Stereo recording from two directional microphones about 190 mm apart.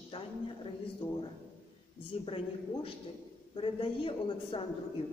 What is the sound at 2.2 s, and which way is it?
A woman's voice, 30° left (ahead or behind).